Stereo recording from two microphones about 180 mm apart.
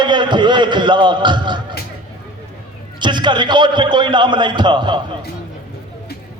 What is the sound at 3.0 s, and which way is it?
A man's voice, 25° right (ahead or behind).